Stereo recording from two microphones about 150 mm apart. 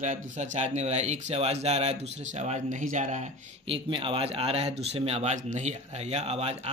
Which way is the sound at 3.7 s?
35° right (ahead or behind).